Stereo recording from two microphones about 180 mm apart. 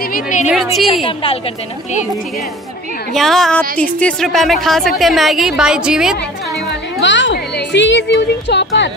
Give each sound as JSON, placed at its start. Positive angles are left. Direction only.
{"t": 0.0, "sound": "a sound", "side_deg": 50}
{"t": 0.5, "sound": "a woman's voice", "side_deg": 0}
{"t": 1.0, "sound": "a woman's voice", "side_deg": 30}
{"t": 3.1, "sound": "a woman's voice", "side_deg": 0}
{"t": 6.7, "sound": "a woman's voice", "side_deg": 85}